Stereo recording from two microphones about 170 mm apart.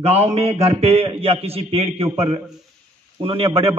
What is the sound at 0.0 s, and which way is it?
A man's voice, 40° right (ahead or behind).